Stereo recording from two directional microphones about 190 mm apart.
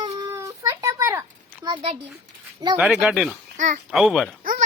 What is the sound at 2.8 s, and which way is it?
Speech, 5° right (ahead or behind).